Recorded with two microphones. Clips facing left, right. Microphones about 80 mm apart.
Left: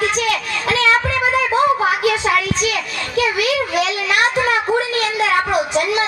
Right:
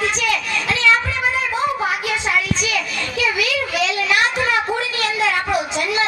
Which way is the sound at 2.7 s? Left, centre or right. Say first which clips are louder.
Even; left.